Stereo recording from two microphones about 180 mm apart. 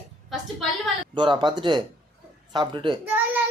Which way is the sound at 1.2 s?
25° right (ahead or behind).